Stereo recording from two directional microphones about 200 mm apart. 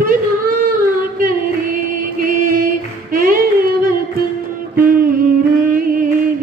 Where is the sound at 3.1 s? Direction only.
45° right (ahead or behind).